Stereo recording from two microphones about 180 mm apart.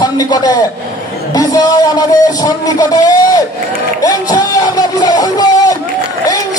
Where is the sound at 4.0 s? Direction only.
20° left (ahead or behind).